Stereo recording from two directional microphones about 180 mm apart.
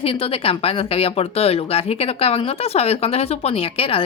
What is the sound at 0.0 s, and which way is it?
Speech, 30° left (ahead or behind).